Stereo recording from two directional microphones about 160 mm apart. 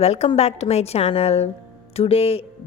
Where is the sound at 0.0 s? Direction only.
40° left (ahead or behind).